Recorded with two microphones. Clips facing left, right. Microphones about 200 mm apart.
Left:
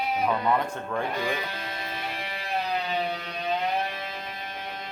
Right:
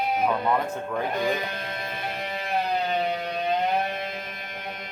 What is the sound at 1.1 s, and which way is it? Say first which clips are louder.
Music: right 3 dB; 45° right (ahead or behind).